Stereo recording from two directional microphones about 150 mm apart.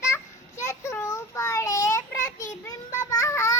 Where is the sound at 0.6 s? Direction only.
20° left (ahead or behind).